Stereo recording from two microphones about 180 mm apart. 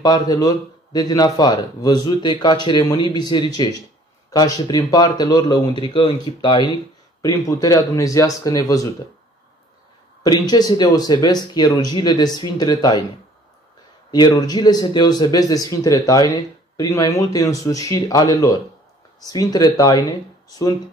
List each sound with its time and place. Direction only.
0.0 s speech: 20° left (ahead or behind)
10.2 s speech: 20° left (ahead or behind)
14.1 s speech: 20° left (ahead or behind)